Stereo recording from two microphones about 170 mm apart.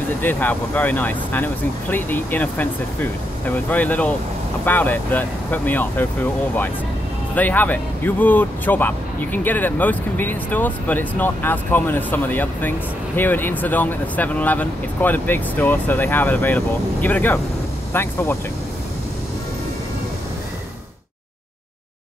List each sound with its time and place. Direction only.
0.2 s speech: 10° left (ahead or behind)
7.3 s speech: 10° left (ahead or behind)